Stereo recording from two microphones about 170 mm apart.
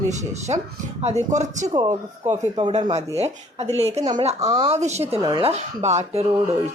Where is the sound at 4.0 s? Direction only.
25° right (ahead or behind).